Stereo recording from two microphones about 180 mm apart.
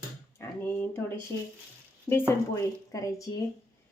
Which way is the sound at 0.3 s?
10° left (ahead or behind).